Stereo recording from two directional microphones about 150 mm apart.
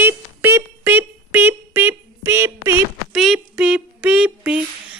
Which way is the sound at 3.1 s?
5° right (ahead or behind).